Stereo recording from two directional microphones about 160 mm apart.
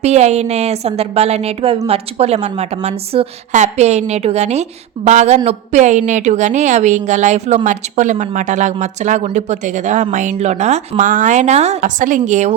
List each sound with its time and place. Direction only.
0.0 s a woman's voice: 45° right (ahead or behind)